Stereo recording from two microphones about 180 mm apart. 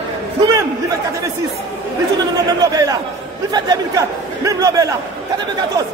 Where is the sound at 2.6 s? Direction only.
20° right (ahead or behind).